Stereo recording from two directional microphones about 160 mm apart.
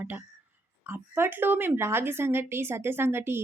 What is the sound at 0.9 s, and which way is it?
Speech, 15° right (ahead or behind).